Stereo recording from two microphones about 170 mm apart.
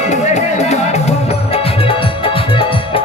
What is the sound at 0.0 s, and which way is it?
Music, 40° left (ahead or behind).